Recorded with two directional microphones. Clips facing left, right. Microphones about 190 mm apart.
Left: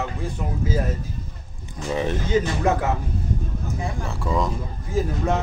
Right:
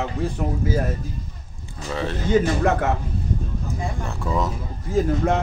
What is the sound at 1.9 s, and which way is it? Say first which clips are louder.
Speech: left 3 dB; 15° left (ahead or behind).